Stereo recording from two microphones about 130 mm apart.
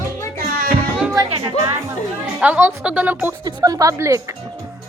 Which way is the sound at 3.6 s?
25° right (ahead or behind).